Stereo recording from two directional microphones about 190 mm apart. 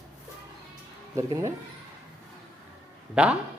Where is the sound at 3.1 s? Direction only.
5° right (ahead or behind).